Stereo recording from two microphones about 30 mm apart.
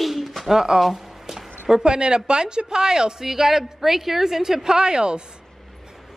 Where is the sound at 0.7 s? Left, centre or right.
Centre.